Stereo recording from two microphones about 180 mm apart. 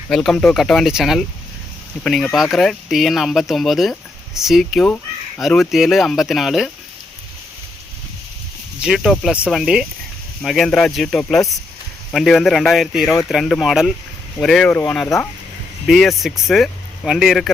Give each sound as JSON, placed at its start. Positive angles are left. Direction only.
{"t": 0.1, "sound": "speech", "side_deg": 5}
{"t": 8.8, "sound": "speech", "side_deg": 0}